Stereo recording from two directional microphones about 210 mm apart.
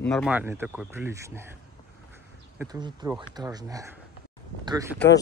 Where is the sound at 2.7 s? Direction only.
20° right (ahead or behind).